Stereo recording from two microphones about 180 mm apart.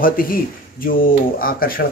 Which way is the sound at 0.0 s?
50° left (ahead or behind).